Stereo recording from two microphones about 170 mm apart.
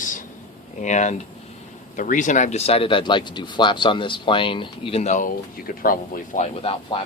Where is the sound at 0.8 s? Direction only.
45° left (ahead or behind).